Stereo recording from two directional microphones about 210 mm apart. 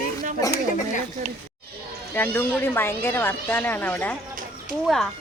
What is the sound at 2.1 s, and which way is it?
Speech, 10° left (ahead or behind).